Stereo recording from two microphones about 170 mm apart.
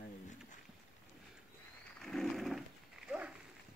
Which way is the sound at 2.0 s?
Centre (ahead or behind).